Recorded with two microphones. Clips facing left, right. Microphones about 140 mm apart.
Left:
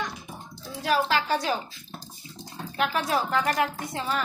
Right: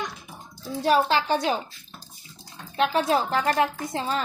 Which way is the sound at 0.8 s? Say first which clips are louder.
Right 3 dB; 30° right (ahead or behind).